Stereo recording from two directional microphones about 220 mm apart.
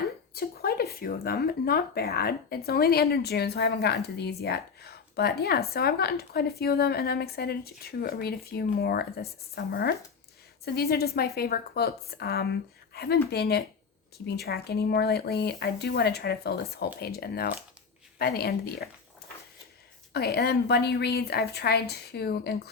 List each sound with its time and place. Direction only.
0.3 s a woman's voice: 45° left (ahead or behind)
20.1 s speech: 45° left (ahead or behind)